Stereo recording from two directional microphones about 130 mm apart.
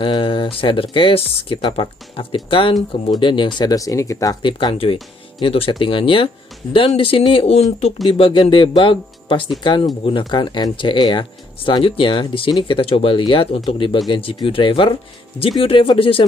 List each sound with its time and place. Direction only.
0.0 s speech: 40° left (ahead or behind)
8.2 s speech: 40° left (ahead or behind)